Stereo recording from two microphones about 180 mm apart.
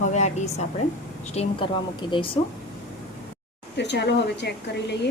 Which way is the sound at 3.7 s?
70° left (ahead or behind).